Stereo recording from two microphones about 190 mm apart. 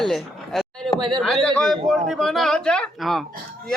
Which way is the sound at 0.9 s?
25° right (ahead or behind).